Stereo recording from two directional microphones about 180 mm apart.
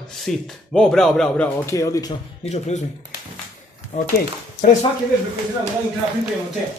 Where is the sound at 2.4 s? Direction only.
40° left (ahead or behind).